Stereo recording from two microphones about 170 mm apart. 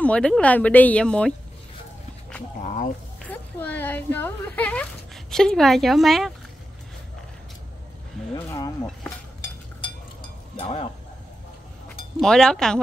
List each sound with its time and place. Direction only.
0.0 s speech: 5° left (ahead or behind)
2.6 s speech: 50° left (ahead or behind)
3.3 s speech: 10° left (ahead or behind)
8.2 s a sound: centre (ahead or behind)
8.5 s speech: 20° left (ahead or behind)
10.5 s speech: 35° left (ahead or behind)
12.2 s speech: 5° left (ahead or behind)